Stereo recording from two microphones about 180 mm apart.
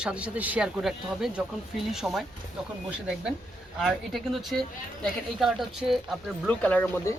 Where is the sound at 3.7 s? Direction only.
Centre (ahead or behind).